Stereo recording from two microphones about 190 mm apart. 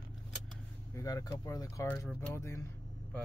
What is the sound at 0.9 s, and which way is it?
Speech, 20° left (ahead or behind).